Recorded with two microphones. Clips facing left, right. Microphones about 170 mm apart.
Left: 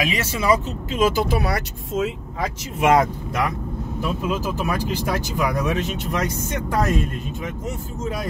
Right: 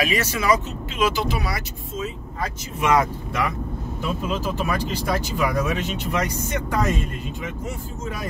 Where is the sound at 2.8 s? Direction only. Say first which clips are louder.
Left 3 dB; 45° left (ahead or behind).